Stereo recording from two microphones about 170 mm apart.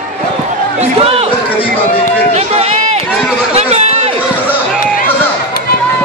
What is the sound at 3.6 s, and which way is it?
Chatter, 40° right (ahead or behind).